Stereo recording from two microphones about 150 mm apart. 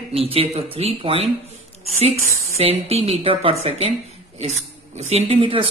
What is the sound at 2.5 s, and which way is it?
Speech, 40° right (ahead or behind).